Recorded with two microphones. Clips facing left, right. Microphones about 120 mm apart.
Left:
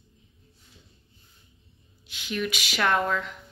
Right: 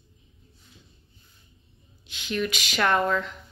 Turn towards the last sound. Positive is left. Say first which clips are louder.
# right 2 dB
turn(degrees=0)  # may be behind; listen again after turning